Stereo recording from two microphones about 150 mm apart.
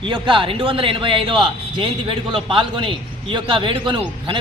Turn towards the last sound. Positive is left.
turn(degrees=-35)  # may be behind; listen again after turning